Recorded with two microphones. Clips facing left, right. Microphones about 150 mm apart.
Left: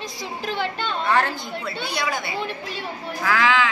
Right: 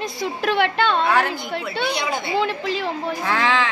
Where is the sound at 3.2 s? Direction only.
30° right (ahead or behind).